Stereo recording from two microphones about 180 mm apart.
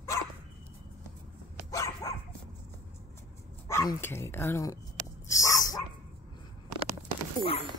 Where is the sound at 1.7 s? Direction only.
20° left (ahead or behind).